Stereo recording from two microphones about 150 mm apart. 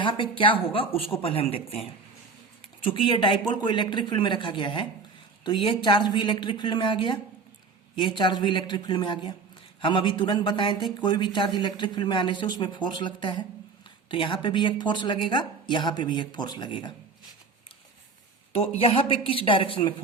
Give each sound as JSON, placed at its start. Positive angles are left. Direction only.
{"t": 0.0, "sound": "a woman's voice", "side_deg": 35}
{"t": 2.9, "sound": "a woman's voice", "side_deg": 35}
{"t": 18.5, "sound": "a woman's voice", "side_deg": 40}